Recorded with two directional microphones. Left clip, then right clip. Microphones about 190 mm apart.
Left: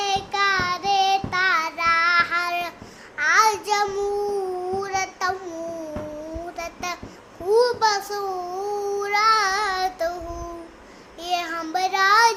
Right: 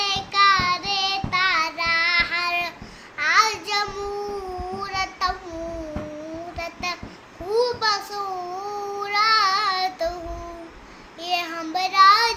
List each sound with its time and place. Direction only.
0.0 s child singing: 15° left (ahead or behind)
6.6 s a sound: 15° left (ahead or behind)
7.5 s child singing: 15° left (ahead or behind)
11.2 s child singing: 15° left (ahead or behind)